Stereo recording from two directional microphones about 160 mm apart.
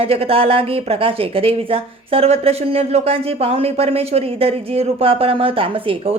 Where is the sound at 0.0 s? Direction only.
35° right (ahead or behind).